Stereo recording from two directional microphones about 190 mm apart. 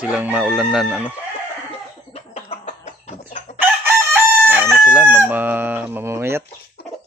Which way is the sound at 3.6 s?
10° right (ahead or behind).